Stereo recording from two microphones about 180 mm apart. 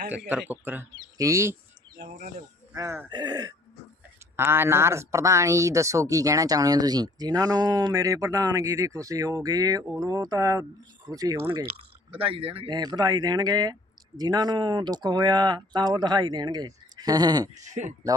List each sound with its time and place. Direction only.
0.3 s speech: 10° right (ahead or behind)
2.7 s speech: 15° right (ahead or behind)
12.1 s speech: 30° right (ahead or behind)